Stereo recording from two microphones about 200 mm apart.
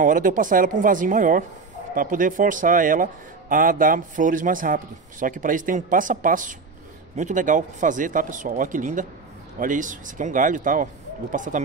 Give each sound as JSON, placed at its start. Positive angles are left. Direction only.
{"t": 0.0, "sound": "a man's voice", "side_deg": -40}